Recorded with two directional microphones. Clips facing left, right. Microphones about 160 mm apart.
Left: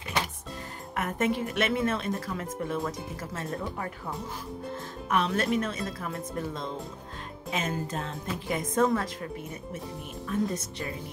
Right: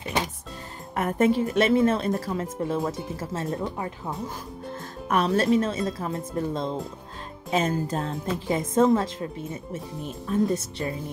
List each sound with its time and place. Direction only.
0.9 s a woman's voice: 35° right (ahead or behind)
5.0 s speech: 40° right (ahead or behind)
10.5 s a woman's voice: 30° right (ahead or behind)